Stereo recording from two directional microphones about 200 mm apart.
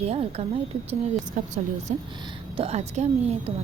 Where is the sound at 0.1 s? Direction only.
30° right (ahead or behind).